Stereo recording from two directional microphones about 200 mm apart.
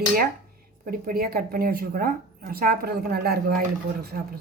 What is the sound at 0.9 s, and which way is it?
A woman's voice, 45° right (ahead or behind).